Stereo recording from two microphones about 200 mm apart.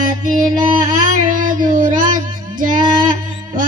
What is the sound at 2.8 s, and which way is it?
Female singing, 20° right (ahead or behind).